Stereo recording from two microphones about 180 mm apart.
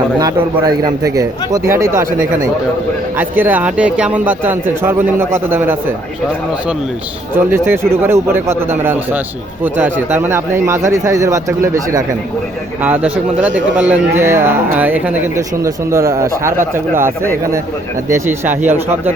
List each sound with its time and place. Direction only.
0.2 s a man's voice: 20° right (ahead or behind)
3.2 s speech: 10° right (ahead or behind)
7.3 s speech: 15° right (ahead or behind)
18.1 s speech: 10° right (ahead or behind)